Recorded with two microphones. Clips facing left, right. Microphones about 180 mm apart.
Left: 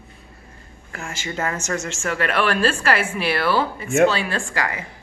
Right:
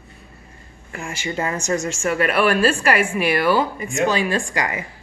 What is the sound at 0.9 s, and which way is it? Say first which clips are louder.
Speech: right 3 dB; 10° right (ahead or behind).